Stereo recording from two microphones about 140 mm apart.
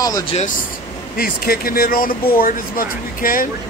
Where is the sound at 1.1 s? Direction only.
90° left.